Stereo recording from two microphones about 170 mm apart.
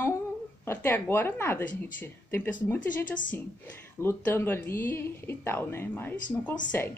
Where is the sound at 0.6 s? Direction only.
10° left (ahead or behind).